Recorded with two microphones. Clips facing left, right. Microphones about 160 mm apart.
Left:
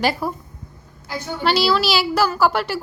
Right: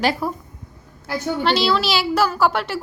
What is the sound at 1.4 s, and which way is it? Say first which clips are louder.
Speech: left 2 dB; 5° left (ahead or behind).